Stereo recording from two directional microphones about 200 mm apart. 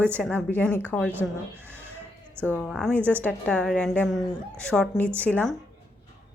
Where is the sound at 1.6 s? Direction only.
10° right (ahead or behind).